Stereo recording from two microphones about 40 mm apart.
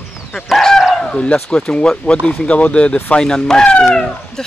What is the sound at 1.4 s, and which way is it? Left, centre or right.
Speech, left.